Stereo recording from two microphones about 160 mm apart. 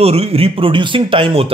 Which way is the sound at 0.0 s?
40° right (ahead or behind).